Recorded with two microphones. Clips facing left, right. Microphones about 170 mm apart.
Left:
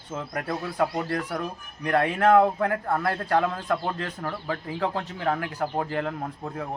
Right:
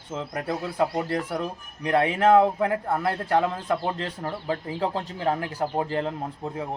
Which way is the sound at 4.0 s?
30° right (ahead or behind).